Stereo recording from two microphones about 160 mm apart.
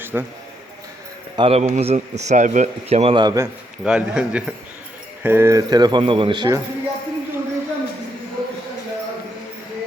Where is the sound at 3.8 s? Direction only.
5° right (ahead or behind); by 6.5 s 30° right (ahead or behind).